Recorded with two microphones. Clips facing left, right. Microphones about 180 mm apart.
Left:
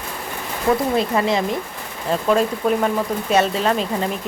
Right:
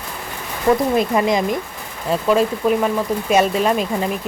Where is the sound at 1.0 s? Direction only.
15° right (ahead or behind).